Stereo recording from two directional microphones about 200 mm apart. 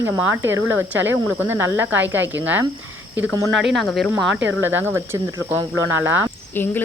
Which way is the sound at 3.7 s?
Centre (ahead or behind).